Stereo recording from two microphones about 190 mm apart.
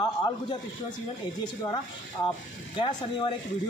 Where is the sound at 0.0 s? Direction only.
20° left (ahead or behind).